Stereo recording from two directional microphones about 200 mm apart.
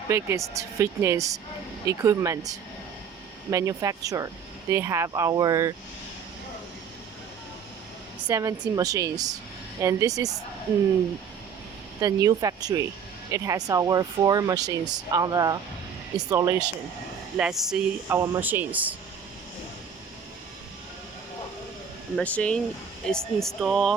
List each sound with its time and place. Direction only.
0.1 s speech: 15° right (ahead or behind)
8.3 s speech: 15° right (ahead or behind)
11.9 s speech: 20° right (ahead or behind)
17.3 s speech: 5° right (ahead or behind)
22.1 s speech: 5° left (ahead or behind)